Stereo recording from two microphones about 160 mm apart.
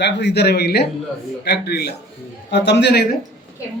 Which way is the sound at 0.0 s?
90° left.